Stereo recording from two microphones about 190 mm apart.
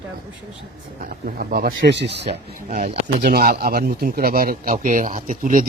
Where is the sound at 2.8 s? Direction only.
50° right (ahead or behind).